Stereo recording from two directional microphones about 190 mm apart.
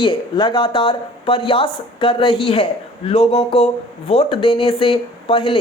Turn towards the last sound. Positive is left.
turn(degrees=30)  # may be behind; listen again after turning